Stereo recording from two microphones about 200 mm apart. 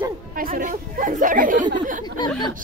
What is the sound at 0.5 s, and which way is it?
Speech, 40° right (ahead or behind).